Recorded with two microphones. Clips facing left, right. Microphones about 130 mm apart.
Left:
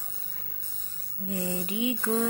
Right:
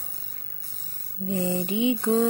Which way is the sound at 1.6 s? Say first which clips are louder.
Right 5 dB; 25° right (ahead or behind).